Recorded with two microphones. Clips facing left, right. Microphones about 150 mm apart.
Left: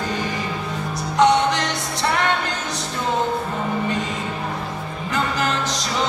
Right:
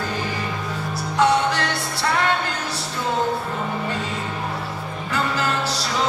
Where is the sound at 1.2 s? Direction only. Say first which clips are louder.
Left 2 dB; 20° left (ahead or behind).